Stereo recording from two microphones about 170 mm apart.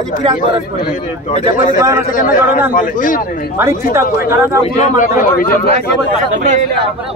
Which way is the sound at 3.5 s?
15° right (ahead or behind).